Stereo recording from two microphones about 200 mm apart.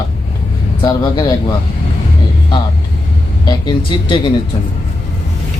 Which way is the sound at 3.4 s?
25° left (ahead or behind).